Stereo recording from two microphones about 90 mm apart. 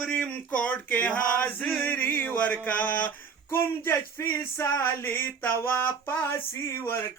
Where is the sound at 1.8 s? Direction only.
20° left (ahead or behind).